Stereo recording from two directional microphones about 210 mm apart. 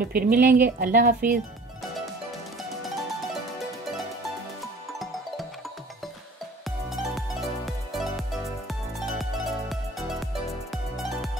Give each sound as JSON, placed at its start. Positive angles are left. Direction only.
{"t": 0.0, "sound": "speech", "side_deg": -45}
{"t": 4.9, "sound": "music", "side_deg": 0}
{"t": 7.0, "sound": "music", "side_deg": 0}